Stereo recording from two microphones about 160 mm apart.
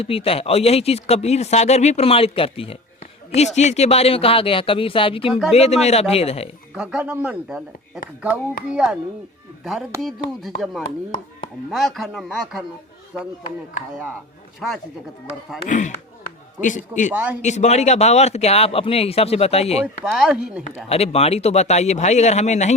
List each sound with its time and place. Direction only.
0.0 s speech: 35° left (ahead or behind)
5.3 s a man's voice: centre (ahead or behind)
5.5 s speech: 40° left (ahead or behind)
6.7 s a man's voice: 5° right (ahead or behind)
10.0 s a man's voice: centre (ahead or behind)
14.6 s a man's voice: centre (ahead or behind)
15.7 s speech: 50° left (ahead or behind)
17.1 s speech: 10° right (ahead or behind)
17.4 s speech: 45° left (ahead or behind)
20.1 s a man's voice: 5° right (ahead or behind)
20.9 s speech: 40° left (ahead or behind)